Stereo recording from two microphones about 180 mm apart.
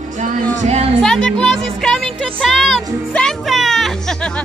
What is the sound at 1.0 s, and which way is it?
Music, 5° left (ahead or behind).